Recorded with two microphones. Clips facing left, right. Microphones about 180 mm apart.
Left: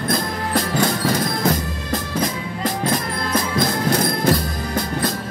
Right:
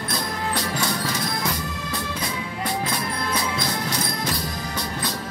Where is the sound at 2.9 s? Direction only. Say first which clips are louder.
Left 5 dB; 50° left (ahead or behind).